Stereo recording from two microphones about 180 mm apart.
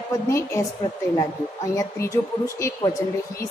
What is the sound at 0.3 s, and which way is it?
Speech, 15° left (ahead or behind).